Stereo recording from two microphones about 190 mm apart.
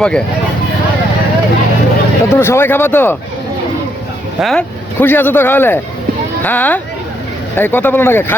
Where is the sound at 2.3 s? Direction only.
15° left (ahead or behind).